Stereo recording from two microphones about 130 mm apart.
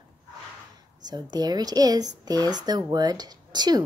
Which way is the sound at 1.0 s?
30° right (ahead or behind).